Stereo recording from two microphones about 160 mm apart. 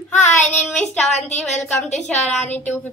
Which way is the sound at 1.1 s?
45° left (ahead or behind).